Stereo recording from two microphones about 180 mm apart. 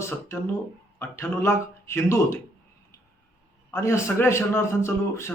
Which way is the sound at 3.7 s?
15° left (ahead or behind).